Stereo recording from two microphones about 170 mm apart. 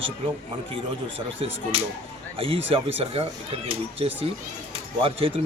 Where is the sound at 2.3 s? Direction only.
35° right (ahead or behind).